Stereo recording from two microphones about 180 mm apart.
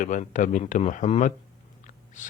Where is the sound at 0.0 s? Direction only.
45° left (ahead or behind).